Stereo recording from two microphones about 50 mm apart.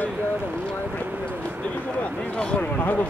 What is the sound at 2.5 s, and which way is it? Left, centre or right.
Speech, left.